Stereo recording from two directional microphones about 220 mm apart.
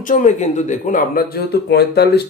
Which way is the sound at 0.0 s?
35° left (ahead or behind).